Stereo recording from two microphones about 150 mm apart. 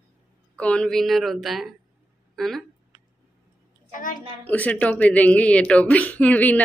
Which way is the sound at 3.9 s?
65° left (ahead or behind).